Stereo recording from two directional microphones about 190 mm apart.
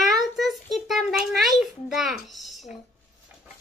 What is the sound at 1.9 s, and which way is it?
Speech, centre (ahead or behind).